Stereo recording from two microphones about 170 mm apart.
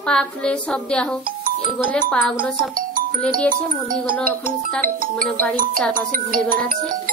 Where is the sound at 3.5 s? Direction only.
55° right (ahead or behind).